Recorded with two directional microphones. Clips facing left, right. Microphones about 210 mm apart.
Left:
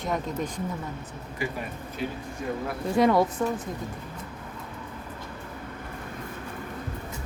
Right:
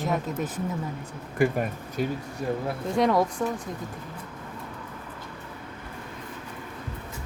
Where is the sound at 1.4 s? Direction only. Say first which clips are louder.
Right 9 dB; 50° right (ahead or behind).